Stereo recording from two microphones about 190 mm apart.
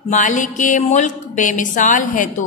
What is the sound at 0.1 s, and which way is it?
A woman's voice, 40° left (ahead or behind).